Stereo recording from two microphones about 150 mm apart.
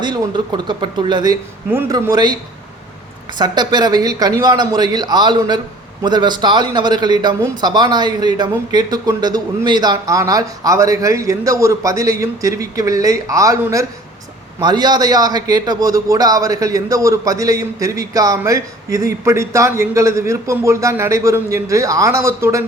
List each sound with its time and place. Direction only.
0.0 s a man's voice: 30° right (ahead or behind)